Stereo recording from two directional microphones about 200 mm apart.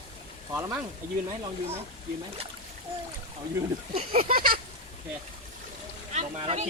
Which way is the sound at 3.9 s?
30° right (ahead or behind).